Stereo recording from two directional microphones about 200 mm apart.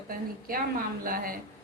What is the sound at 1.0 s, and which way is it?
Speech, 45° right (ahead or behind).